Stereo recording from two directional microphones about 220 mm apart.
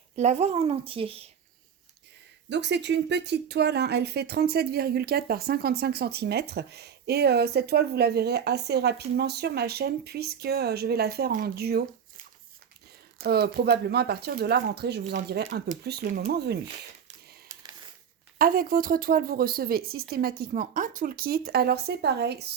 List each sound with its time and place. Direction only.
0.2 s speech: 30° right (ahead or behind)
2.5 s speech: 50° right (ahead or behind)
13.1 s speech: 45° right (ahead or behind)
18.3 s speech: 40° right (ahead or behind)